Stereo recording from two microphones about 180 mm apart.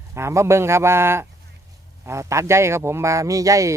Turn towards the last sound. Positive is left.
turn(degrees=-20)  # may be behind; listen again after turning